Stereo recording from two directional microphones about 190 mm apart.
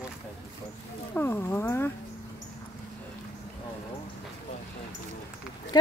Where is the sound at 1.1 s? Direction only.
10° left (ahead or behind).